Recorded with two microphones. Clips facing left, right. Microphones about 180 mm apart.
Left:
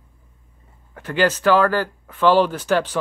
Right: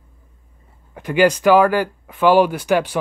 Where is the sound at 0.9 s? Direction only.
15° right (ahead or behind).